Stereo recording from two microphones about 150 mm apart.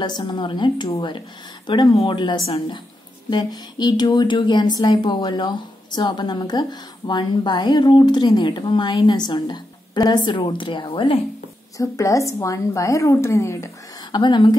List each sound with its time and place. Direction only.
0.0 s a woman's voice: 30° left (ahead or behind)
3.3 s a woman's voice: 30° left (ahead or behind)
11.8 s a woman's voice: 20° left (ahead or behind)
14.1 s a woman's voice: 30° left (ahead or behind)